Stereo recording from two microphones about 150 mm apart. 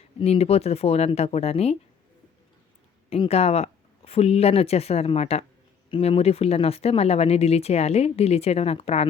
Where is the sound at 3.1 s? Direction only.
45° left (ahead or behind).